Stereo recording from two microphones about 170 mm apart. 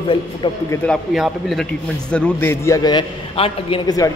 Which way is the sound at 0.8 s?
Centre (ahead or behind).